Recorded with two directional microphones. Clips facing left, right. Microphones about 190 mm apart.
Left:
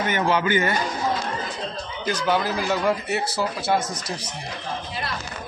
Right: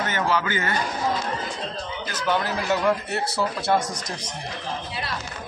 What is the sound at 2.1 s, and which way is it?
A man's voice, 10° left (ahead or behind).